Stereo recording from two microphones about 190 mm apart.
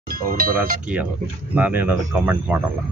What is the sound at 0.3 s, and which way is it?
Speech, 50° right (ahead or behind).